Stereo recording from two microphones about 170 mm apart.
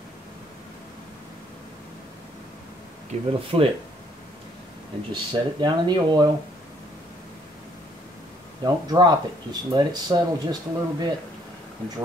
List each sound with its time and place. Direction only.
3.1 s speech: 40° right (ahead or behind)
5.1 s speech: 25° right (ahead or behind)
8.6 s speech: 25° right (ahead or behind)